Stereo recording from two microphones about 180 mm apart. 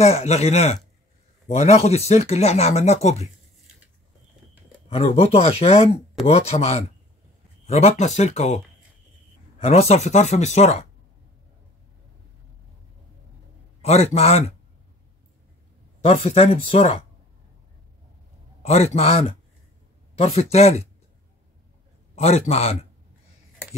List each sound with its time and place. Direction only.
0.0 s speech: 35° left (ahead or behind)
4.8 s speech: 35° left (ahead or behind)
9.6 s speech: 35° left (ahead or behind)
13.8 s speech: 35° left (ahead or behind)
16.0 s speech: 30° left (ahead or behind)
18.6 s speech: 35° left (ahead or behind)
22.1 s speech: 35° left (ahead or behind)